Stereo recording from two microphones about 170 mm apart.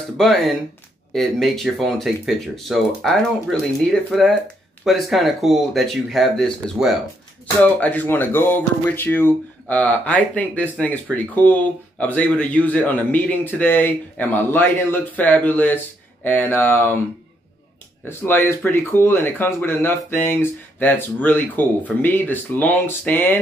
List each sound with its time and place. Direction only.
0.2 s speech: centre (ahead or behind)
18.0 s speech: 15° left (ahead or behind)